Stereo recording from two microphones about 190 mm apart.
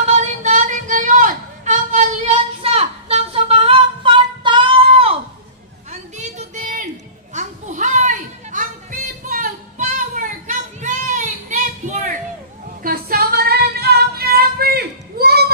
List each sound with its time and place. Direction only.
0.1 s a sound: 40° right (ahead or behind)
7.3 s children playing: 40° right (ahead or behind)
9.3 s child singing: 45° right (ahead or behind)
12.8 s female singing: 55° right (ahead or behind)